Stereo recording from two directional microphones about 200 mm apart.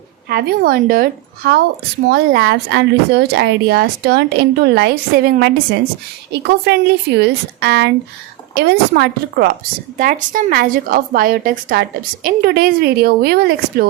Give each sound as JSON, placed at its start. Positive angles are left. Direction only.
{"t": 0.3, "sound": "a woman's voice", "side_deg": -50}
{"t": 2.0, "sound": "a woman's voice", "side_deg": -55}